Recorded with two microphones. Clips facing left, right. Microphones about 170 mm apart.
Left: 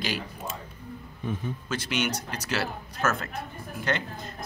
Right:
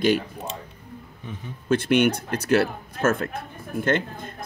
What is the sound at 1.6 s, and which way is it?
Speech, 55° right (ahead or behind).